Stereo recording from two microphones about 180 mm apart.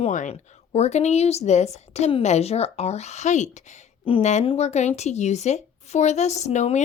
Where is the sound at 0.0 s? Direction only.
40° left (ahead or behind).